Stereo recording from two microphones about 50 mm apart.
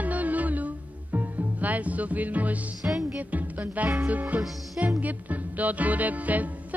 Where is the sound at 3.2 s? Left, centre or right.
Right.